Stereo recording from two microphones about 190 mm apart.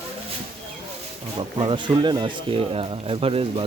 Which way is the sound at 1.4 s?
25° right (ahead or behind).